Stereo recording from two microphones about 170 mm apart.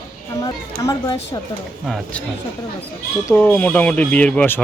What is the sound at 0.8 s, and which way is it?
Speech, 25° left (ahead or behind).